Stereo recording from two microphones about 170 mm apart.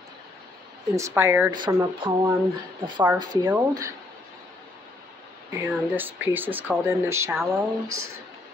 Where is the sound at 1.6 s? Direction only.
30° right (ahead or behind).